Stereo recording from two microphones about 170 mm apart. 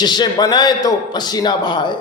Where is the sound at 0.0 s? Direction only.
25° left (ahead or behind).